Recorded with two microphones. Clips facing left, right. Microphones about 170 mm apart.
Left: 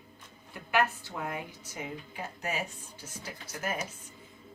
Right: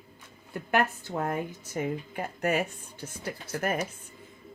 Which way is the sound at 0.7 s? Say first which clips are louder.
Right 2 dB; 45° right (ahead or behind).